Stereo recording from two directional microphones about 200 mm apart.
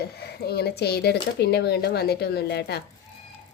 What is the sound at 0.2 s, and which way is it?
Speech, 50° left (ahead or behind).